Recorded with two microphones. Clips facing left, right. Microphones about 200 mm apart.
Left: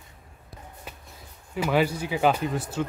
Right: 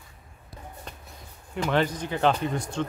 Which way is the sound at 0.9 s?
5° left (ahead or behind).